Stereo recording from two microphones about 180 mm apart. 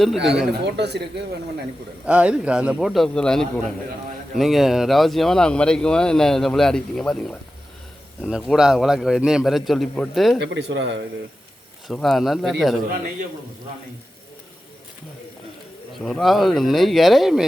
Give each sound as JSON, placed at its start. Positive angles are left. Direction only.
{"t": 0.0, "sound": "speech", "side_deg": 0}
{"t": 0.6, "sound": "speech", "side_deg": -70}
{"t": 2.0, "sound": "speech", "side_deg": -5}
{"t": 10.4, "sound": "speech", "side_deg": -85}
{"t": 11.9, "sound": "speech", "side_deg": 0}
{"t": 16.0, "sound": "speech", "side_deg": 0}